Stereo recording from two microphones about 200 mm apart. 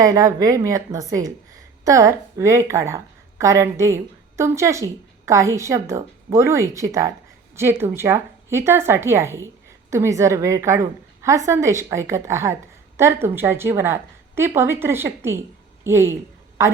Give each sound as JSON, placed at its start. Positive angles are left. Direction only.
{"t": 0.0, "sound": "a woman's voice", "side_deg": -15}